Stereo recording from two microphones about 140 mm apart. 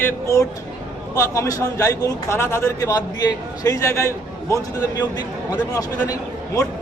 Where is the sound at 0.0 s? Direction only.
20° left (ahead or behind).